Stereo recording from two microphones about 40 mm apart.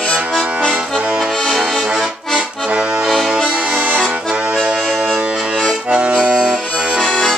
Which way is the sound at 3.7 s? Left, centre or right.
Right.